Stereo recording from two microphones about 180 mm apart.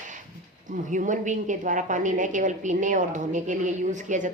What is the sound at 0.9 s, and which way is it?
A woman's voice, 45° right (ahead or behind).